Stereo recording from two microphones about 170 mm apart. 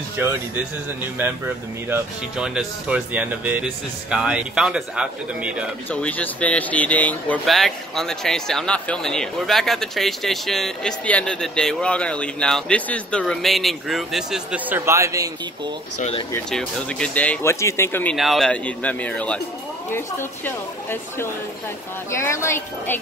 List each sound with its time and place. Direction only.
0.2 s speech: 10° right (ahead or behind)
1.9 s speech: 5° right (ahead or behind)
5.9 s speech: 10° left (ahead or behind); by 15.7 s 20° right (ahead or behind)
16.0 s speech: 35° left (ahead or behind)
16.4 s speech: 5° left (ahead or behind)
18.1 s speech: centre (ahead or behind); by 22.9 s 15° left (ahead or behind)